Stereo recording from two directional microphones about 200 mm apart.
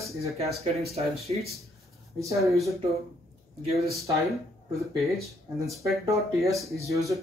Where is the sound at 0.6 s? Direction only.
30° right (ahead or behind).